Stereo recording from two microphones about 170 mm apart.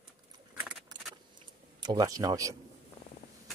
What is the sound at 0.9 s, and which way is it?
Keys jangling, 25° right (ahead or behind).